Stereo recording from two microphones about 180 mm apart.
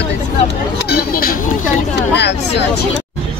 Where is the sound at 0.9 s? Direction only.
55° left (ahead or behind).